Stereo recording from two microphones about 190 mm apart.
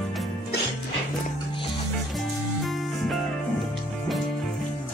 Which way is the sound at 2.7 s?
Centre (ahead or behind).